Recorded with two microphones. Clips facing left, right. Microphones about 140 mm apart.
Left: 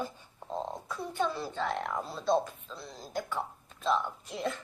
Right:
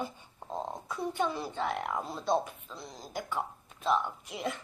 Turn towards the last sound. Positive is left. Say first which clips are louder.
# left 1 dB
turn(degrees=-15)  # may be behind; listen again after turning